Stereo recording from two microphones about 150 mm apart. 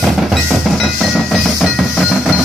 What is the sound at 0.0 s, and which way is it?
Percussion, centre (ahead or behind).